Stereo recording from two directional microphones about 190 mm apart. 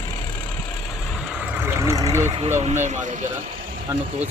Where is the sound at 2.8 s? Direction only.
40° right (ahead or behind).